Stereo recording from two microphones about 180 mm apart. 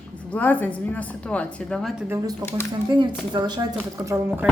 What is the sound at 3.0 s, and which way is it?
A woman's voice, 25° right (ahead or behind).